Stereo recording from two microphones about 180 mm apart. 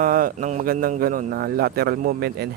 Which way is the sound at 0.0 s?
50° right (ahead or behind).